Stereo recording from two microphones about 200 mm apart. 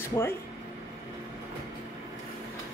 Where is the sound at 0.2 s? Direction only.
15° left (ahead or behind).